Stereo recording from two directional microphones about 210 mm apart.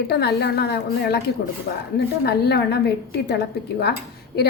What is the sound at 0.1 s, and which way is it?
A woman's voice, 50° left (ahead or behind).